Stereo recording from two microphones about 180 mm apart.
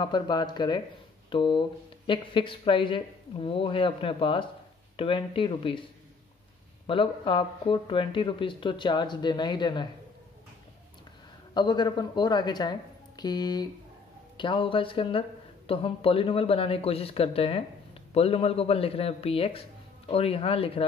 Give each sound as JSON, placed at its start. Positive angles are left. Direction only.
{"t": 0.0, "sound": "speech", "side_deg": 25}
{"t": 6.9, "sound": "speech", "side_deg": 30}
{"t": 11.5, "sound": "speech", "side_deg": 25}